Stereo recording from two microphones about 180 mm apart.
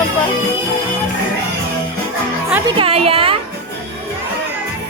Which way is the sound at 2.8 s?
30° right (ahead or behind).